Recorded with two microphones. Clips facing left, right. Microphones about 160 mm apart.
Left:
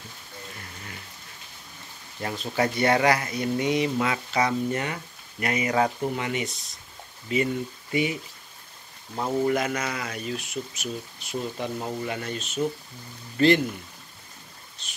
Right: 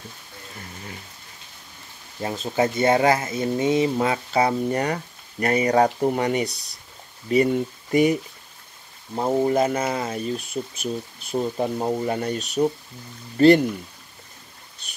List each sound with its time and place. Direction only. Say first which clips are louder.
2.2 s speech: right 4 dB; 25° right (ahead or behind); by 8.2 s 45° right (ahead or behind)
9.1 s speech: right 4 dB; 30° right (ahead or behind)